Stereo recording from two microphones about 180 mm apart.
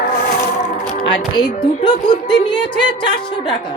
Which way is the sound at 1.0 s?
25° left (ahead or behind).